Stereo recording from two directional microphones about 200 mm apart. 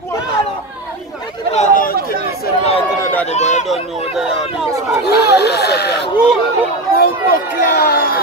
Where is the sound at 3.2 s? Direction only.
35° left (ahead or behind).